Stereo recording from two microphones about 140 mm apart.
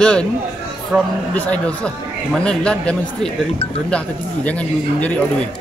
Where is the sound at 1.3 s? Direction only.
10° left (ahead or behind).